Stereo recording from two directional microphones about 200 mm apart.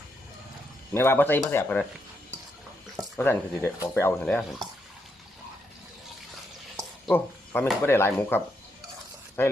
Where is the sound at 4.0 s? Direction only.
10° left (ahead or behind).